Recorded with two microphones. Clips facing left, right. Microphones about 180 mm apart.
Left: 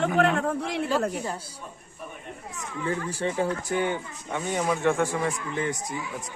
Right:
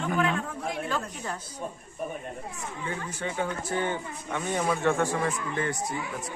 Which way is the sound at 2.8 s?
35° left (ahead or behind).